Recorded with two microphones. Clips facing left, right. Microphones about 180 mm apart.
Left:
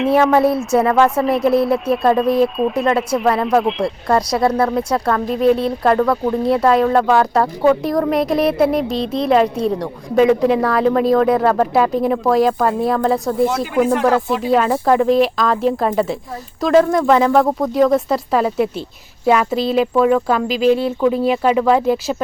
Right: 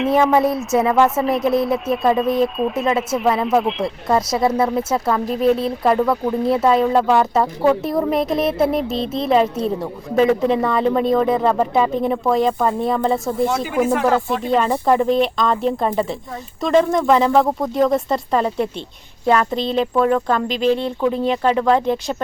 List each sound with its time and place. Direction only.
0.3 s a woman's voice: centre (ahead or behind)
4.4 s speech: 20° right (ahead or behind)
4.9 s a woman's voice: 5° right (ahead or behind)